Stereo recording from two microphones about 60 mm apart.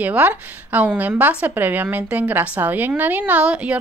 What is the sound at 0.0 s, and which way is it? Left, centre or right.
A woman's voice, right.